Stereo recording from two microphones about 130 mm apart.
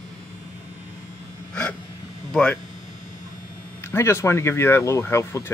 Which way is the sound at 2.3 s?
10° left (ahead or behind).